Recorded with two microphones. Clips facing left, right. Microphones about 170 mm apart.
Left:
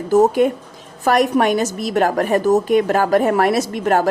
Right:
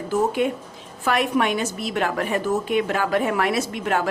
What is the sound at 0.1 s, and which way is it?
A woman's voice, 40° left (ahead or behind).